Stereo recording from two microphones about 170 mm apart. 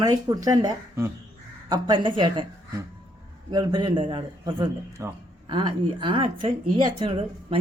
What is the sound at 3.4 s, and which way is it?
Speech, 25° right (ahead or behind).